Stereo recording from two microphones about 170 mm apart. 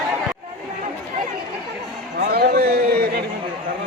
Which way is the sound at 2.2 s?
65° right (ahead or behind).